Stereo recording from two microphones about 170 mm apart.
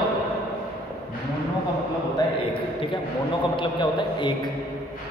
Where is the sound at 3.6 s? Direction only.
25° left (ahead or behind).